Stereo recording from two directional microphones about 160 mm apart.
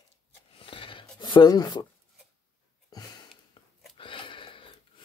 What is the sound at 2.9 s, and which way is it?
Sniff, 25° left (ahead or behind).